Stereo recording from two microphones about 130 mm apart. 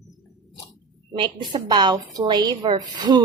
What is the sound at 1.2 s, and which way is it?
A woman's voice, 35° right (ahead or behind).